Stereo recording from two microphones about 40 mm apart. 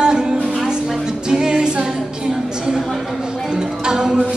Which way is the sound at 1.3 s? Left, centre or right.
Centre.